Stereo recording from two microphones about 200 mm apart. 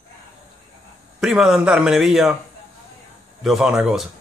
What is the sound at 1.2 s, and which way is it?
A man's voice, 5° right (ahead or behind).